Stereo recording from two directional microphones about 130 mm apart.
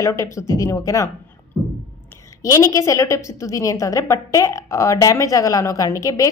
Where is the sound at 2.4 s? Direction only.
25° left (ahead or behind).